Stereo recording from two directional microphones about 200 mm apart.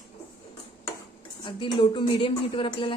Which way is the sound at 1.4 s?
25° left (ahead or behind).